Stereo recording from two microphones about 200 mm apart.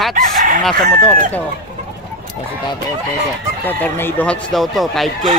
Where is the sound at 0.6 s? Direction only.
5° left (ahead or behind).